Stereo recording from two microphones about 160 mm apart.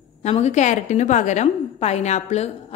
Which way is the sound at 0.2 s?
45° left (ahead or behind).